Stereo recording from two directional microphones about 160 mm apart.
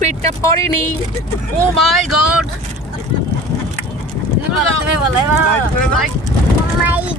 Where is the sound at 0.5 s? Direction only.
15° left (ahead or behind).